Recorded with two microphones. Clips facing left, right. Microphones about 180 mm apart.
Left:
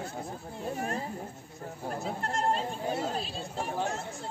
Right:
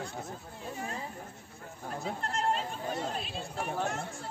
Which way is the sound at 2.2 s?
40° left (ahead or behind).